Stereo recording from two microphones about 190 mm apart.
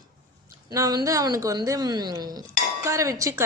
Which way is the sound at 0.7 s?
20° right (ahead or behind).